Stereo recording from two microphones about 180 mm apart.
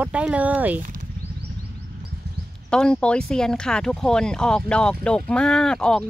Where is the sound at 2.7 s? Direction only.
5° left (ahead or behind).